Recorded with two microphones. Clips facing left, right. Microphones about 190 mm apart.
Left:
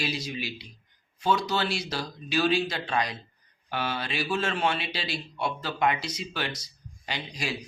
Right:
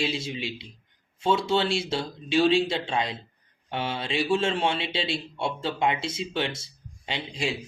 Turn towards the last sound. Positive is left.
turn(degrees=-25)  # may be behind; listen again after turning